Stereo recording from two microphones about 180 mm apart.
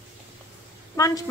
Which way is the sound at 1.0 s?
20° left (ahead or behind).